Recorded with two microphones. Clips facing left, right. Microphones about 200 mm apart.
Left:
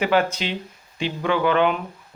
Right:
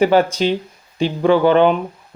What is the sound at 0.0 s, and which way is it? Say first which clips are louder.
Speech: right 7 dB; 35° right (ahead or behind).